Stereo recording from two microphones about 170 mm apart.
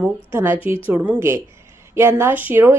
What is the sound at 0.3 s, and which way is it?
A woman's voice, 15° right (ahead or behind).